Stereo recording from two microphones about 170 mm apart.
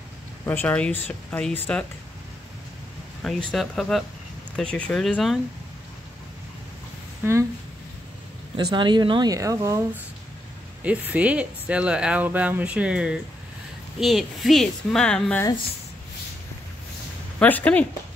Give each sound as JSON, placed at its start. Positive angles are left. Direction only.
{"t": 0.5, "sound": "speech", "side_deg": 10}
{"t": 3.2, "sound": "speech", "side_deg": 0}
{"t": 8.5, "sound": "speech", "side_deg": -25}
{"t": 17.4, "sound": "speech", "side_deg": 10}